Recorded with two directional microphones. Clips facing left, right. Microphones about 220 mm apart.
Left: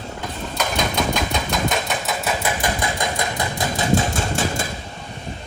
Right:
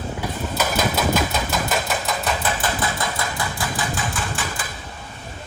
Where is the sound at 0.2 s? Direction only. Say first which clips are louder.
Right 1 dB; 5° right (ahead or behind); by 4.4 s 25° left (ahead or behind).